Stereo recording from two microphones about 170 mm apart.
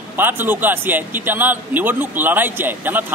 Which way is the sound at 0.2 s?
10° right (ahead or behind).